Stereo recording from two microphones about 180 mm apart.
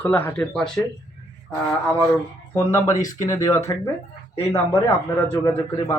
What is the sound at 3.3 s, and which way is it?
Speech, 15° left (ahead or behind).